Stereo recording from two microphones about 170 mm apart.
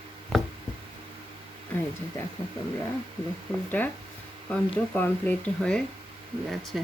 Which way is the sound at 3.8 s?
10° left (ahead or behind).